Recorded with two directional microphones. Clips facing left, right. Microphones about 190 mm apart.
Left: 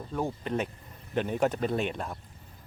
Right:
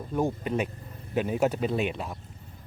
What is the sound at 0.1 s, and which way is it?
Speech, 15° right (ahead or behind).